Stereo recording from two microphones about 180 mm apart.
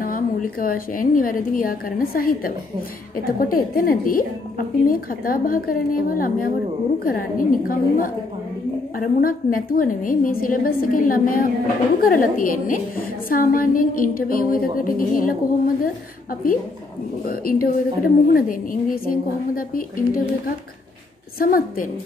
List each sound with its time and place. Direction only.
0.0 s a woman's voice: 50° left (ahead or behind)
17.3 s a woman's voice: 50° left (ahead or behind)